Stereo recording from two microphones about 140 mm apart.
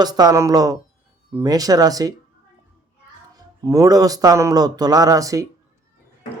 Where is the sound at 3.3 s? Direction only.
25° right (ahead or behind).